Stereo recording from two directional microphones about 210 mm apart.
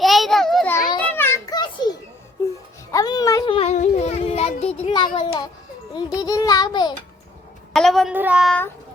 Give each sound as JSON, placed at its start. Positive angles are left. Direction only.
{"t": 0.0, "sound": "children playing", "side_deg": 0}
{"t": 2.9, "sound": "a sound", "side_deg": 15}
{"t": 5.9, "sound": "music", "side_deg": 20}
{"t": 7.7, "sound": "a woman's voice", "side_deg": 0}